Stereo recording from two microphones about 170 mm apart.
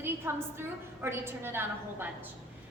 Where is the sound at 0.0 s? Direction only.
15° right (ahead or behind).